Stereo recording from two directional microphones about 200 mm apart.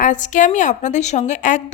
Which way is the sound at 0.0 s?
40° left (ahead or behind).